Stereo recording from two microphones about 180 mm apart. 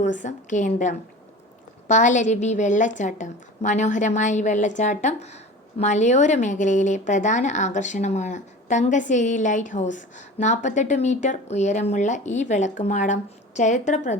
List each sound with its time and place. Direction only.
0.0 s a woman's voice: 45° left (ahead or behind)